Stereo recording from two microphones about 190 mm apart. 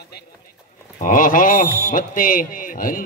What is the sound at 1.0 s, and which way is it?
Speech, 45° left (ahead or behind).